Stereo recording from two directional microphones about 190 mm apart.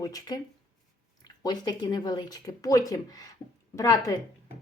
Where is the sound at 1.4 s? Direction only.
20° left (ahead or behind).